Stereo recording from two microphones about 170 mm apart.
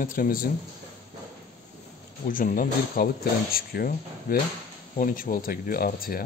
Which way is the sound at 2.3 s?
55° left (ahead or behind).